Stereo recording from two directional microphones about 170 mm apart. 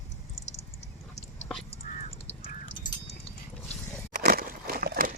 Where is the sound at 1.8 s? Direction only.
50° left (ahead or behind).